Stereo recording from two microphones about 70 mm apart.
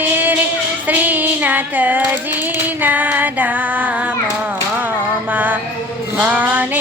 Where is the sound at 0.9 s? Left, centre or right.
Right.